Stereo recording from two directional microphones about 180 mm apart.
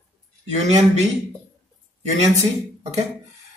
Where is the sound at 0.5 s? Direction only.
40° right (ahead or behind).